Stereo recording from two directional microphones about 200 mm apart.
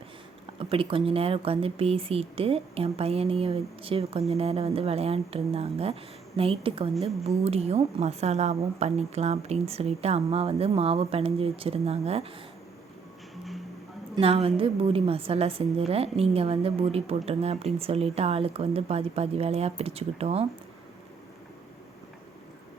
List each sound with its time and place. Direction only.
0.6 s a woman's voice: 25° right (ahead or behind)
14.2 s a woman's voice: 30° right (ahead or behind)